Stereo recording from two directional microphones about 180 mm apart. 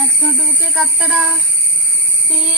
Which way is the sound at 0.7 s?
Centre (ahead or behind).